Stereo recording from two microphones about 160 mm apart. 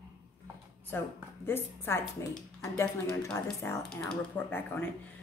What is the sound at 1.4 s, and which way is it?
Speech, 15° left (ahead or behind).